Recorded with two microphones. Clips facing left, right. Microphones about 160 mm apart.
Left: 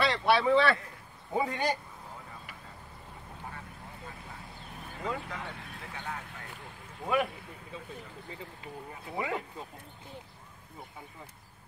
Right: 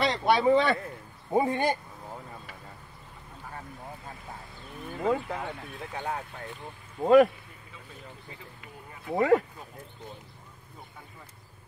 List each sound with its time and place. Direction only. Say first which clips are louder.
0.0 s a sound: right 2 dB; 20° right (ahead or behind)
1.4 s speech: right 3 dB; 55° right (ahead or behind)
5.0 s speech: right 8 dB; 40° right (ahead or behind)
7.0 s speech: right 11 dB; 45° right (ahead or behind)
9.1 s speech: right 12 dB; 70° right (ahead or behind)